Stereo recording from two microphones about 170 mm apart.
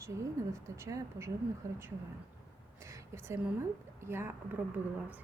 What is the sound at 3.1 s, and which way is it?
A woman's voice, 15° right (ahead or behind).